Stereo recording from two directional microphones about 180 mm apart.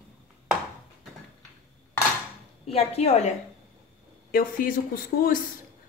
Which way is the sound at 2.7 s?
35° left (ahead or behind).